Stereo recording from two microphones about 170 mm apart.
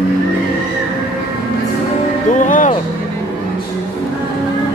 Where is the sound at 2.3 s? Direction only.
50° left (ahead or behind).